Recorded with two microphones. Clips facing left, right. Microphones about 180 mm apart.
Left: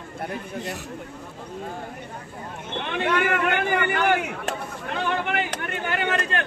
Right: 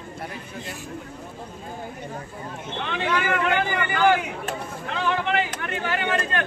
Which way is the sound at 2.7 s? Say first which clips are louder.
Left 1 dB; 55° left (ahead or behind).